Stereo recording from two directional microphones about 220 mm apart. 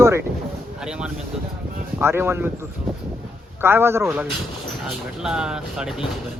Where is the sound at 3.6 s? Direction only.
10° right (ahead or behind).